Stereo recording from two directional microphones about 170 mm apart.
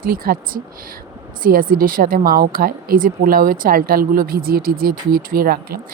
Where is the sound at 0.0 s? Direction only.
60° right (ahead or behind).